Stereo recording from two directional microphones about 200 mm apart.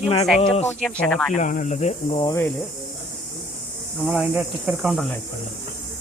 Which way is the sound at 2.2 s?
15° left (ahead or behind).